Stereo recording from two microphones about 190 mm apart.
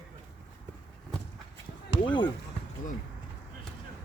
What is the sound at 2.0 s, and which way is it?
Speech, 25° left (ahead or behind).